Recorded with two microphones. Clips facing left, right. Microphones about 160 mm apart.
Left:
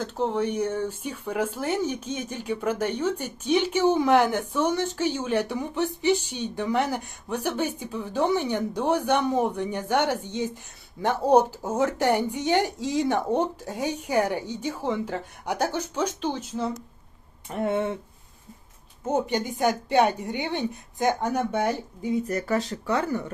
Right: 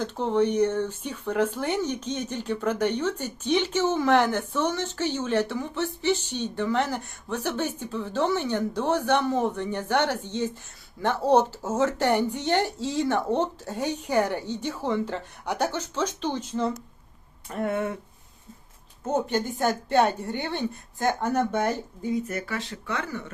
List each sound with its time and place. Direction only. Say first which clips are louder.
0.0 s speech: right 2 dB; 5° left (ahead or behind)
17.5 s speech: left 2 dB; 25° left (ahead or behind)
19.0 s speech: even; 10° left (ahead or behind)
22.2 s speech: left 5 dB; 35° left (ahead or behind)